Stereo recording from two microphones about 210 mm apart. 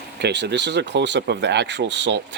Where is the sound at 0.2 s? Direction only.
55° right (ahead or behind).